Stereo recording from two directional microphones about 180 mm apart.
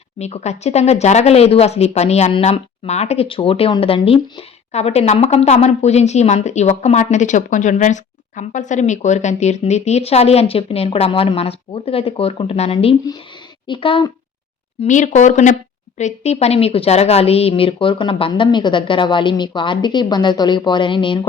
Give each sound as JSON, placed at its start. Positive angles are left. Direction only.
{"t": 0.2, "sound": "a woman's voice", "side_deg": 35}
{"t": 14.8, "sound": "a woman's voice", "side_deg": 45}